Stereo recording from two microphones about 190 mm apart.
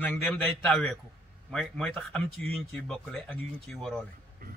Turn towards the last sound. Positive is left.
turn(degrees=5)  # may be behind; listen again after turning